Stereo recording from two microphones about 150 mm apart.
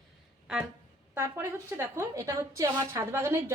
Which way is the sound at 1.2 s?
20° right (ahead or behind).